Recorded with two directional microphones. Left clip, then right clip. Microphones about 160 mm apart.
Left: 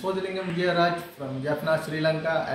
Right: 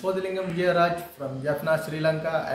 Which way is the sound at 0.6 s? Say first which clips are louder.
Right 1 dB; 10° right (ahead or behind).